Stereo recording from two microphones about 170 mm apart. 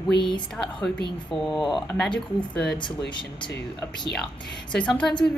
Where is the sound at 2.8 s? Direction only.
25° left (ahead or behind).